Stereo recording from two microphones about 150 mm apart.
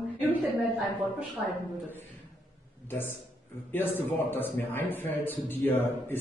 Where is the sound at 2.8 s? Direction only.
15° left (ahead or behind).